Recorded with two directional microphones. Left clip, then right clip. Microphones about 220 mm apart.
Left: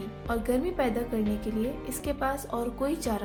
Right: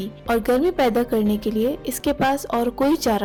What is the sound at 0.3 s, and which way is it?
Speech, 40° right (ahead or behind).